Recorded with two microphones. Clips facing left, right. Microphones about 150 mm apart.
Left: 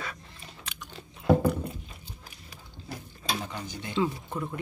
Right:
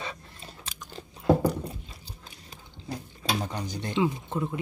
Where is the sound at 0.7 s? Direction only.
35° right (ahead or behind).